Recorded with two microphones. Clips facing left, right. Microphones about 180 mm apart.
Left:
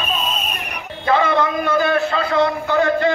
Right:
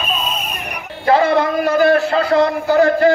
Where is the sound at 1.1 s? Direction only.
35° right (ahead or behind).